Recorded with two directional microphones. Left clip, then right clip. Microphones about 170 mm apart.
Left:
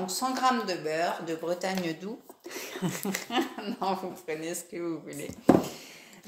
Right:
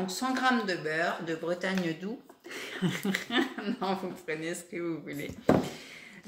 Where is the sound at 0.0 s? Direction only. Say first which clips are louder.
Left 2 dB; 15° right (ahead or behind).